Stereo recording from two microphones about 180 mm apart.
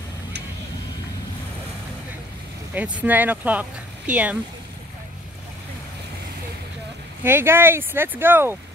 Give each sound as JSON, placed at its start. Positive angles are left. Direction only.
{"t": 2.7, "sound": "speech", "side_deg": -10}
{"t": 7.2, "sound": "speech", "side_deg": -10}